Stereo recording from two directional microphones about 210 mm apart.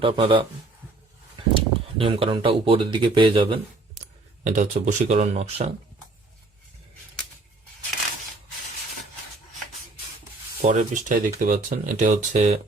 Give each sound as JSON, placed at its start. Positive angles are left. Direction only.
{"t": 0.0, "sound": "speech", "side_deg": -25}
{"t": 1.5, "sound": "speech", "side_deg": -25}
{"t": 4.4, "sound": "speech", "side_deg": -35}
{"t": 10.6, "sound": "speech", "side_deg": -35}